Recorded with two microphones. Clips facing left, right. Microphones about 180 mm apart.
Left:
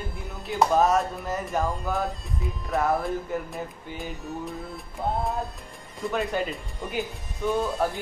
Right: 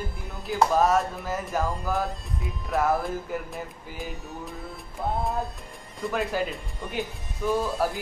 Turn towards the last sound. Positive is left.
turn(degrees=0)  # may be behind; listen again after turning